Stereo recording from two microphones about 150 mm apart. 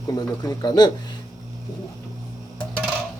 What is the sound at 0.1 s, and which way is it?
Speech, 25° left (ahead or behind).